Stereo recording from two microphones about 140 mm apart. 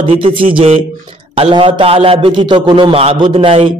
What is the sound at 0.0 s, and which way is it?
A man's voice, 40° right (ahead or behind).